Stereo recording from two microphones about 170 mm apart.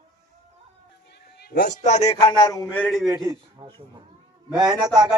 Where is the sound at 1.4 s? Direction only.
75° left (ahead or behind).